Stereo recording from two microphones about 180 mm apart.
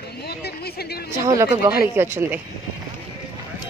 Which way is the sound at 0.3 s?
60° left (ahead or behind).